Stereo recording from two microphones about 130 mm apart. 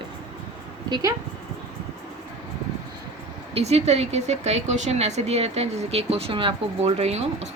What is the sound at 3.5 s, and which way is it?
Speech, 55° right (ahead or behind).